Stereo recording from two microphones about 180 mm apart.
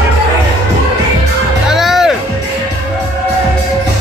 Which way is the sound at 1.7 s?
Centre (ahead or behind).